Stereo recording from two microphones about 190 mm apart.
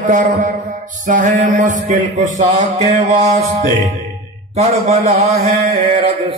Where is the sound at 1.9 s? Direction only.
40° right (ahead or behind).